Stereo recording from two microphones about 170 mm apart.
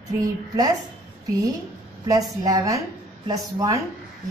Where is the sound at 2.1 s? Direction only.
20° right (ahead or behind).